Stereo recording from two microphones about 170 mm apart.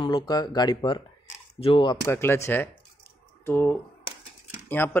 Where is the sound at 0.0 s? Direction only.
25° left (ahead or behind).